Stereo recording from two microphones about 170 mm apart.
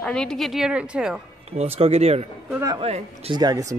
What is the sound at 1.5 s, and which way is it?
Speech, 35° right (ahead or behind).